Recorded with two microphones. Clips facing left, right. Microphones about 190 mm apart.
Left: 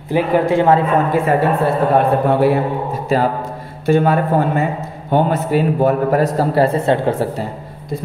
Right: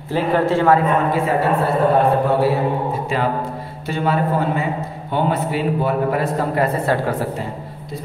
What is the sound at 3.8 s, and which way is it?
A man's voice, 50° left (ahead or behind).